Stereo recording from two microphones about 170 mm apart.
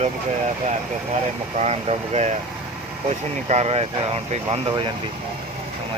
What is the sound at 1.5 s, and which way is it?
Speech, 40° right (ahead or behind).